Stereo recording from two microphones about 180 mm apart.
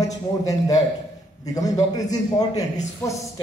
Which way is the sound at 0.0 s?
20° left (ahead or behind).